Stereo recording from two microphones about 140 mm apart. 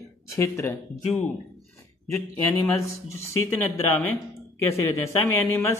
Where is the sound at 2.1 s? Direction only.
20° left (ahead or behind).